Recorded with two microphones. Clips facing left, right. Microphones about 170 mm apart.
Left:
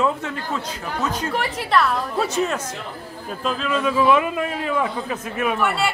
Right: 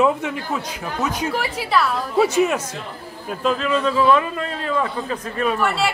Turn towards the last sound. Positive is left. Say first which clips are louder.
# right 1 dB
turn(degrees=0)  # may be behind; listen again after turning